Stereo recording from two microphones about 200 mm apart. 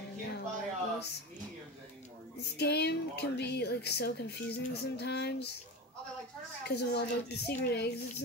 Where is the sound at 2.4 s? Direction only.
55° left (ahead or behind).